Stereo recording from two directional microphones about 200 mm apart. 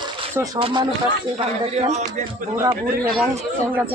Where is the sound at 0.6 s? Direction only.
25° right (ahead or behind).